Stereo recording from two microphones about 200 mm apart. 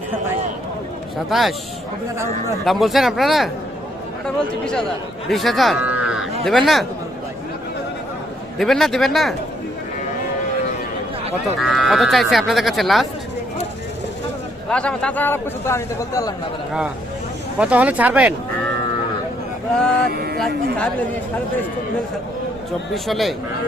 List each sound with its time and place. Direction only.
1.3 s speech: centre (ahead or behind)
2.6 s speech: centre (ahead or behind)
5.3 s speech: centre (ahead or behind)
8.5 s speech: centre (ahead or behind)
11.6 s speech: centre (ahead or behind)
14.7 s a man's voice: 5° left (ahead or behind)
17.6 s speech: 5° right (ahead or behind)
20.1 s speech: 50° right (ahead or behind)
23.0 s speech: centre (ahead or behind)